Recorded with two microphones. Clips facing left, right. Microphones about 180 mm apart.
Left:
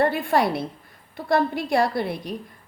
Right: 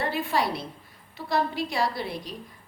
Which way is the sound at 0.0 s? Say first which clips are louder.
Left 6 dB; 55° left (ahead or behind).